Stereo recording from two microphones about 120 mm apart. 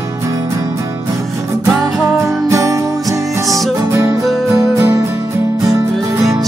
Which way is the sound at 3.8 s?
25° right (ahead or behind).